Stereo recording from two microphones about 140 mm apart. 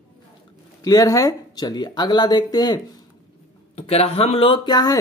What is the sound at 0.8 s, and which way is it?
Speech, 25° left (ahead or behind).